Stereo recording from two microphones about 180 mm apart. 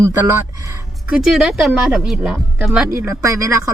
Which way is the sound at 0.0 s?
15° right (ahead or behind).